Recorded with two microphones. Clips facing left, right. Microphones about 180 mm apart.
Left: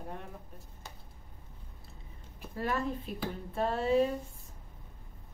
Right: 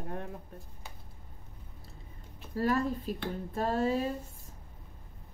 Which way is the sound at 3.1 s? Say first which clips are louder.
Right 2 dB; 40° right (ahead or behind).